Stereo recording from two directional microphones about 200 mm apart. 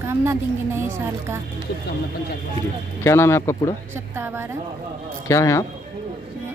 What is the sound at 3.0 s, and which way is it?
Speech, 15° left (ahead or behind).